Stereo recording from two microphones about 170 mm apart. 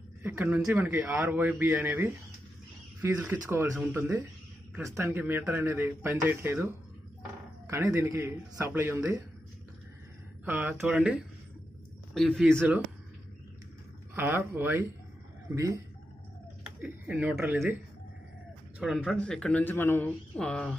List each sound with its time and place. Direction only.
0.2 s a man's voice: 10° right (ahead or behind)
3.7 s speech: 5° right (ahead or behind)
4.7 s a man's voice: 15° right (ahead or behind)
10.4 s a man's voice: 10° right (ahead or behind); by 12.6 s 5° left (ahead or behind)
14.1 s a man's voice: 15° right (ahead or behind)
16.8 s a man's voice: 10° right (ahead or behind)
18.8 s speech: centre (ahead or behind)